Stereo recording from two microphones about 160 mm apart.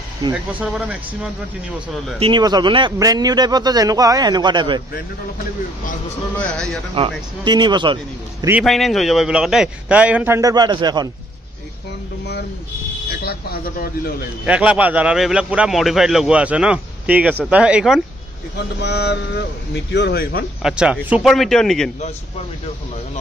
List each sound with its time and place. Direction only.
0.3 s a man's voice: 10° right (ahead or behind)
2.1 s speech: 30° right (ahead or behind)
6.3 s a man's voice: 5° left (ahead or behind)
7.0 s speech: 25° right (ahead or behind)
8.6 s a man's voice: centre (ahead or behind); by 11.1 s 25° right (ahead or behind)
13.2 s speech: 75° left (ahead or behind)
14.4 s a man's voice: 5° right (ahead or behind)
18.6 s a man's voice: 90° left
20.6 s a man's voice: 5° right (ahead or behind)